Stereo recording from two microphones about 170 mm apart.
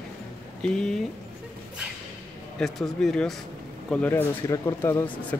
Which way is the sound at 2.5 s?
Centre (ahead or behind).